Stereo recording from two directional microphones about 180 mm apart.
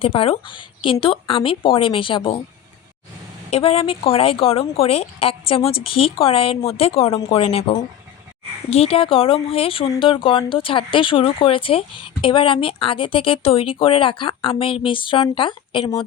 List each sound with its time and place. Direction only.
0.0 s speech: 30° left (ahead or behind)
3.5 s speech: 30° left (ahead or behind)
8.7 s speech: 35° left (ahead or behind)